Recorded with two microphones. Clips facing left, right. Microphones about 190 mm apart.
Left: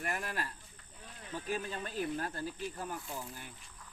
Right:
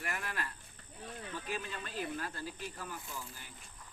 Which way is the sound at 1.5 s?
45° left (ahead or behind).